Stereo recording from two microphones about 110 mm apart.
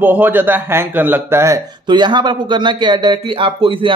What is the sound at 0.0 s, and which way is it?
A man's voice, 15° right (ahead or behind).